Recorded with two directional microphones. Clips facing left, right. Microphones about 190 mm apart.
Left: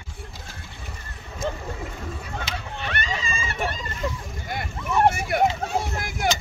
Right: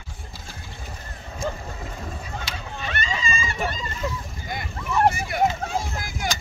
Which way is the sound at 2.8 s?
60° left (ahead or behind).